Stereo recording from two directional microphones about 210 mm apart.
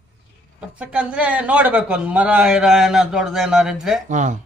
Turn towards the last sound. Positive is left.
turn(degrees=-35)  # may be behind; listen again after turning